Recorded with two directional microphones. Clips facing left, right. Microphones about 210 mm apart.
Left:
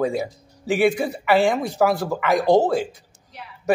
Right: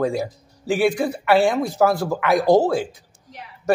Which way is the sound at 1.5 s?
Centre (ahead or behind).